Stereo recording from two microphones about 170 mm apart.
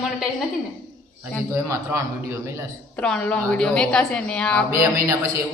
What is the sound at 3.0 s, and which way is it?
A woman's voice, 5° left (ahead or behind).